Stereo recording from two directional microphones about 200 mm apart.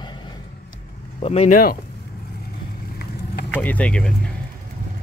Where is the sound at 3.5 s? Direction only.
10° left (ahead or behind).